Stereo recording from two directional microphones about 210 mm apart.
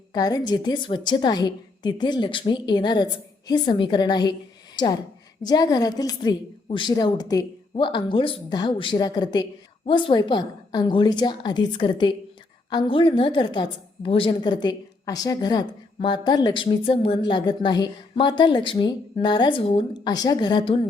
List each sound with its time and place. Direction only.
0.1 s a woman's voice: 15° left (ahead or behind)